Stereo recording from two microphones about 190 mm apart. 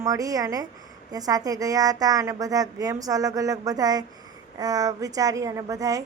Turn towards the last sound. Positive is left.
turn(degrees=-20)  # may be behind; listen again after turning